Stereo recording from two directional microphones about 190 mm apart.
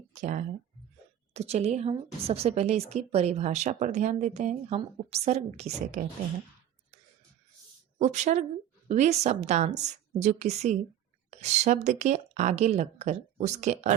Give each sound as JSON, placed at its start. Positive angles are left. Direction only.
{"t": 0.1, "sound": "a sound", "side_deg": -40}
{"t": 1.3, "sound": "a woman's voice", "side_deg": -35}
{"t": 7.9, "sound": "a woman's voice", "side_deg": -40}